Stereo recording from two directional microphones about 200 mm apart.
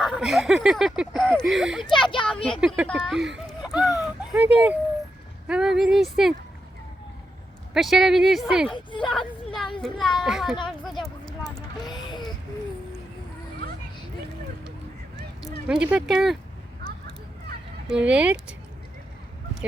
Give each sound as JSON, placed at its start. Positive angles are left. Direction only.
{"t": 0.0, "sound": "speech", "side_deg": 0}
{"t": 7.7, "sound": "speech", "side_deg": 0}
{"t": 8.7, "sound": "speech", "side_deg": 25}
{"t": 9.0, "sound": "a sound", "side_deg": 0}
{"t": 9.8, "sound": "speech", "side_deg": 0}
{"t": 11.4, "sound": "a sound", "side_deg": 20}
{"t": 15.6, "sound": "speech", "side_deg": -5}
{"t": 17.9, "sound": "speech", "side_deg": -5}